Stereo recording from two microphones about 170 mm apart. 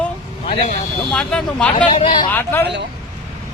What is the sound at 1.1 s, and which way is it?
Speech, 5° left (ahead or behind).